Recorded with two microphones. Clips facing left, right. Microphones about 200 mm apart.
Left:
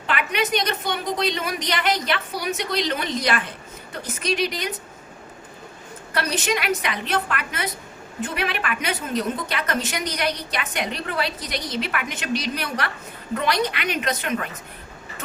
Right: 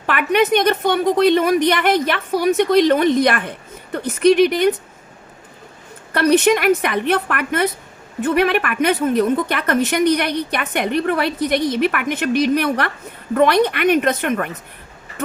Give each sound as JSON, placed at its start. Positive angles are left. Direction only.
{"t": 0.0, "sound": "a woman's voice", "side_deg": -55}
{"t": 6.1, "sound": "a woman's voice", "side_deg": -55}